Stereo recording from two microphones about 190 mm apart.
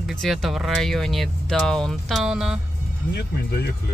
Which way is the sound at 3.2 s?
60° left (ahead or behind).